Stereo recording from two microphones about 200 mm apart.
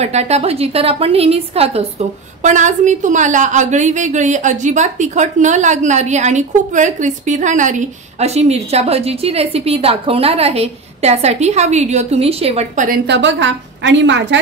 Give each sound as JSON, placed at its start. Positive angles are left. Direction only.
{"t": 0.0, "sound": "a woman's voice", "side_deg": -35}
{"t": 13.0, "sound": "a woman's voice", "side_deg": -60}